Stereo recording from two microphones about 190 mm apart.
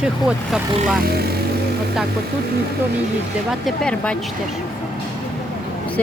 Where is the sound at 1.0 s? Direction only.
55° right (ahead or behind).